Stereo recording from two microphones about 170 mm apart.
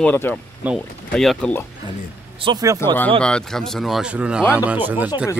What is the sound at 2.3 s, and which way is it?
Speech, 25° right (ahead or behind).